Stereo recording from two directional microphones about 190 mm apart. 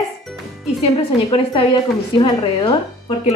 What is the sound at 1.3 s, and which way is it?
A woman's voice, 25° left (ahead or behind).